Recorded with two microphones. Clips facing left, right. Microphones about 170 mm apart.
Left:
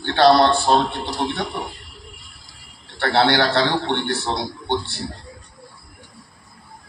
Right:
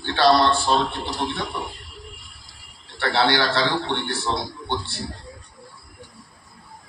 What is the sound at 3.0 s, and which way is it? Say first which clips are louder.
Speech: left 3 dB; 55° left (ahead or behind).